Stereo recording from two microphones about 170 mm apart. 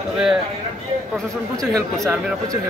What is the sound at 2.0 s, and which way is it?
Speech, 20° right (ahead or behind).